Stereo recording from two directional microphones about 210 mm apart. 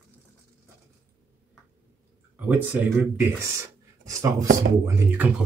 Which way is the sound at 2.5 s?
5° right (ahead or behind).